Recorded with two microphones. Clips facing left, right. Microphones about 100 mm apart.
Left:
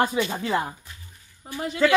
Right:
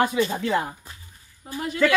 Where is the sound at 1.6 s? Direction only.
30° left (ahead or behind).